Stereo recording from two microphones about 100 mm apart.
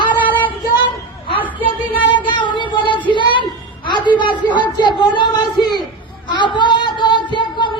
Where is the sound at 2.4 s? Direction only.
55° left (ahead or behind).